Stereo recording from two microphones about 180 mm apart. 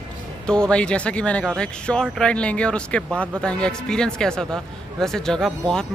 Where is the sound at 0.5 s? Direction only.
5° left (ahead or behind).